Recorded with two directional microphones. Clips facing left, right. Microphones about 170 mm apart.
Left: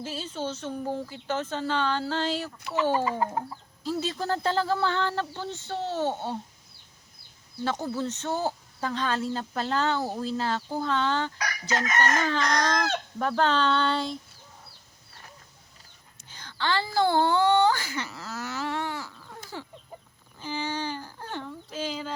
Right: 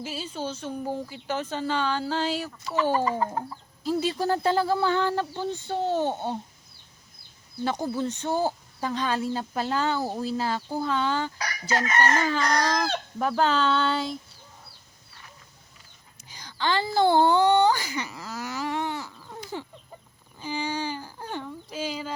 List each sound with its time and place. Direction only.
0.0 s speech: 10° right (ahead or behind)
2.9 s chicken: 5° left (ahead or behind)
3.8 s speech: 10° right (ahead or behind)
7.6 s speech: 15° right (ahead or behind)
16.3 s speech: 15° right (ahead or behind)
20.4 s a sound: 10° right (ahead or behind)